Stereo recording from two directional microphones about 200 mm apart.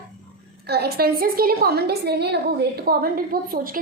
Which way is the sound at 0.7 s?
50° right (ahead or behind).